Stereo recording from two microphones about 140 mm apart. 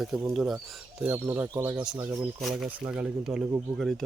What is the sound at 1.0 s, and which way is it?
Speech, 10° right (ahead or behind).